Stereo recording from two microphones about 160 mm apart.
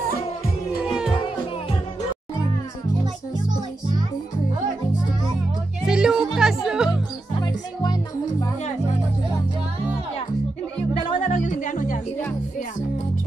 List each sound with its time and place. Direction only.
0.8 s music: 5° right (ahead or behind)
5.9 s music: 5° right (ahead or behind)
7.4 s music: 25° left (ahead or behind)
11.0 s music: 50° left (ahead or behind)